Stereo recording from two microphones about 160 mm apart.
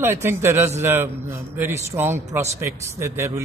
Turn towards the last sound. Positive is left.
turn(degrees=-15)  # may be behind; listen again after turning